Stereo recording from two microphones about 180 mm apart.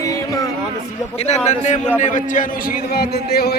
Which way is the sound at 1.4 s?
40° left (ahead or behind).